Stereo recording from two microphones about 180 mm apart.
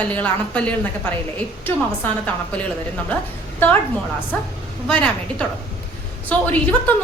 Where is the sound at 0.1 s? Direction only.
5° left (ahead or behind).